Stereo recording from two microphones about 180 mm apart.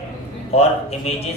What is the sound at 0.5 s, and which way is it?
Speech, 35° left (ahead or behind).